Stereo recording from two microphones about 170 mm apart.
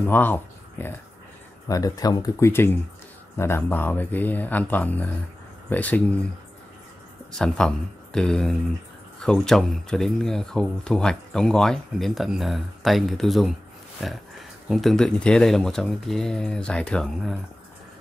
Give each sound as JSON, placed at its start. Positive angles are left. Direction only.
{"t": 0.0, "sound": "speech", "side_deg": 10}
{"t": 7.3, "sound": "speech", "side_deg": 5}